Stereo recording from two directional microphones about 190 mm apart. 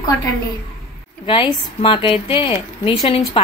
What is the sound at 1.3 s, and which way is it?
A woman's voice, 25° left (ahead or behind).